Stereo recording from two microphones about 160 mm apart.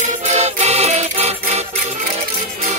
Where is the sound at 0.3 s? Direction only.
45° right (ahead or behind).